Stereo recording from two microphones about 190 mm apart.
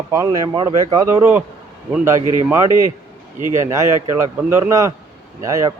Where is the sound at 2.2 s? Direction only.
25° left (ahead or behind).